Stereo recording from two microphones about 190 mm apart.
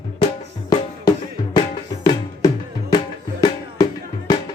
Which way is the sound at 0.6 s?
20° left (ahead or behind).